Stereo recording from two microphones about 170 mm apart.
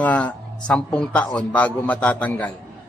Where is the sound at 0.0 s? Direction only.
10° left (ahead or behind).